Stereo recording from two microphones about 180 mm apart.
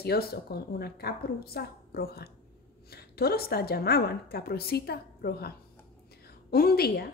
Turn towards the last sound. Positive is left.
turn(degrees=60)  # may be behind; listen again after turning